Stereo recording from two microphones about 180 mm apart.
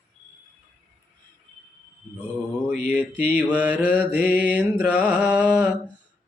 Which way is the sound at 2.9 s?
10° right (ahead or behind).